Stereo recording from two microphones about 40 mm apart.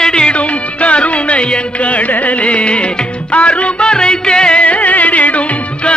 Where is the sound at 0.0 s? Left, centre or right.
Left.